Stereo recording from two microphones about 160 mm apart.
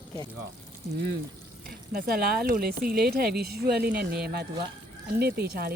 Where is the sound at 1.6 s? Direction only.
70° right (ahead or behind).